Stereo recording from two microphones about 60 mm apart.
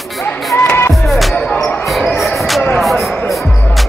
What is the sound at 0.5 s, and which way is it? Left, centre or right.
Music, left.